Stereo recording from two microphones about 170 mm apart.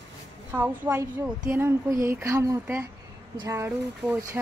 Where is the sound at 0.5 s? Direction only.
10° right (ahead or behind).